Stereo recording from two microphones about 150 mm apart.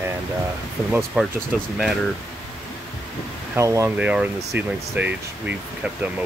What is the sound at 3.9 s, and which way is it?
Speech, 10° right (ahead or behind).